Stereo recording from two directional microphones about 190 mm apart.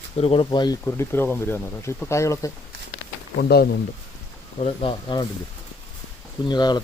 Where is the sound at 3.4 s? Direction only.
55° left (ahead or behind).